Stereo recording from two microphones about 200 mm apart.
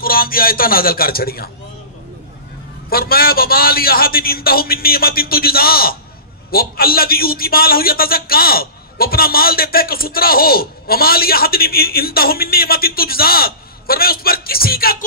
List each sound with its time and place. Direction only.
0.0 s a man's voice: 45° left (ahead or behind)
2.9 s a man's voice: 50° left (ahead or behind)